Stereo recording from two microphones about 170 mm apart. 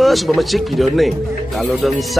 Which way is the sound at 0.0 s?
Centre (ahead or behind).